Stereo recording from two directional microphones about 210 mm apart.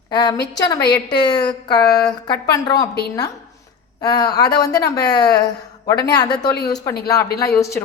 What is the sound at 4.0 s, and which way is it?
A woman's voice, 20° left (ahead or behind).